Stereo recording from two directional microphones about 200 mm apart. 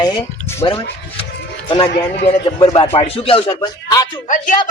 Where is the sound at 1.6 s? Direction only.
25° left (ahead or behind).